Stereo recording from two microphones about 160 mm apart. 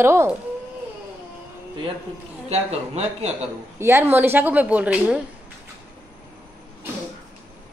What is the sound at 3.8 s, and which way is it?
A woman's voice, 15° right (ahead or behind).